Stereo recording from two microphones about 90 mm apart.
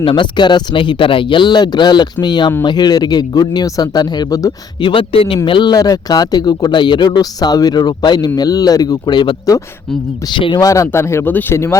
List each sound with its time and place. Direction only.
0.0 s speech: 70° left (ahead or behind); by 4.5 s 40° left (ahead or behind)
4.8 s speech: 70° left (ahead or behind); by 5.4 s 85° left
5.5 s speech: 65° left (ahead or behind)
5.7 s speech: 45° left (ahead or behind)
10.6 s speech: 35° left (ahead or behind)
11.3 s speech: 20° left (ahead or behind)
11.5 s speech: 30° left (ahead or behind)